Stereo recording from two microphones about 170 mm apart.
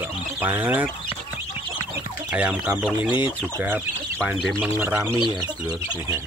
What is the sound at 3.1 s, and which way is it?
Speech, 25° left (ahead or behind).